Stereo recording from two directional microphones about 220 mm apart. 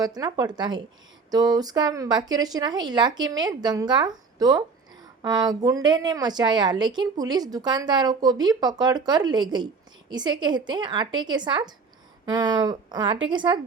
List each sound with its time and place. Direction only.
0.0 s a woman's voice: 15° right (ahead or behind)